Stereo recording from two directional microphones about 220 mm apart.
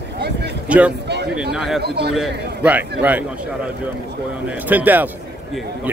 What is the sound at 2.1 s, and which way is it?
Speech, 5° right (ahead or behind).